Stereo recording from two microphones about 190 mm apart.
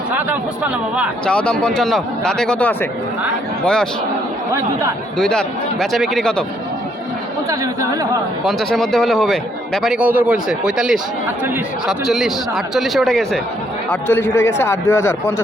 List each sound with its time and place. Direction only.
0.1 s speech: 10° right (ahead or behind)
1.2 s a man's voice: 5° left (ahead or behind)
5.1 s a man's voice: 5° left (ahead or behind)
7.5 s speech: 15° right (ahead or behind)
8.4 s a man's voice: centre (ahead or behind)
13.9 s a man's voice: 10° left (ahead or behind)